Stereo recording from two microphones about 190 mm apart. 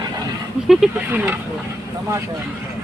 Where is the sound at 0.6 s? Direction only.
5° right (ahead or behind).